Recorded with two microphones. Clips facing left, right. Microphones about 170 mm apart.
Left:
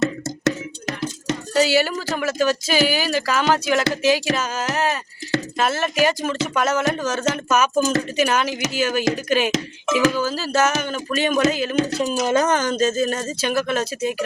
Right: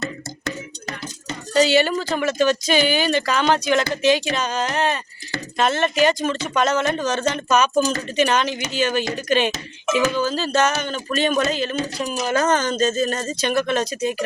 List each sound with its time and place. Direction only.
0.0 s a sound: 90° left
1.5 s speech: 5° left (ahead or behind)
11.9 s speech: 20° left (ahead or behind); by 14.2 s 5° left (ahead or behind)